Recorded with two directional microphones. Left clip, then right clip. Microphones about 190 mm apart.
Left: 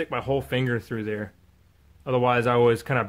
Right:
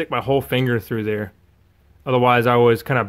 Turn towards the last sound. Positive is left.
turn(degrees=-20)  # may be behind; listen again after turning